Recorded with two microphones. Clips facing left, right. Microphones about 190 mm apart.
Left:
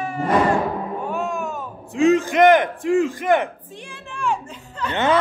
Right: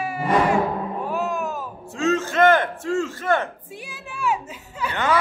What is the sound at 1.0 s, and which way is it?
Music, centre (ahead or behind).